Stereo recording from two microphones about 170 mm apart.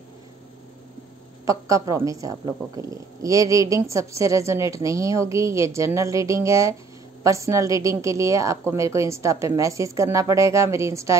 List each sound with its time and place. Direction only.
1.4 s a woman's voice: 20° right (ahead or behind)